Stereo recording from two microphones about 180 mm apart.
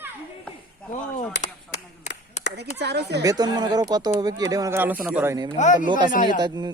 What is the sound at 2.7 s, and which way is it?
Speech, 65° right (ahead or behind).